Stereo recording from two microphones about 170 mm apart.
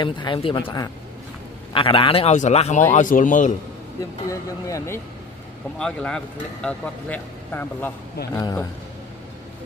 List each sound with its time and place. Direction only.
0.0 s a man's voice: 25° left (ahead or behind); by 3.5 s 50° left (ahead or behind)
4.3 s a man's voice: 20° left (ahead or behind)
5.8 s speech: 5° left (ahead or behind)
8.4 s a man's voice: 20° left (ahead or behind)